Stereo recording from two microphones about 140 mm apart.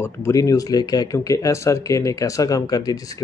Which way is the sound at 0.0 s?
20° left (ahead or behind).